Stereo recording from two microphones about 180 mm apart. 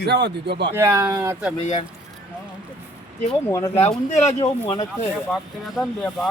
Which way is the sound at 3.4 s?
15° left (ahead or behind).